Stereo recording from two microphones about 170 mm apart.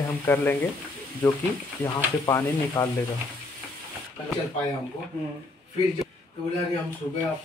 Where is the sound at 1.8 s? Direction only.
20° left (ahead or behind).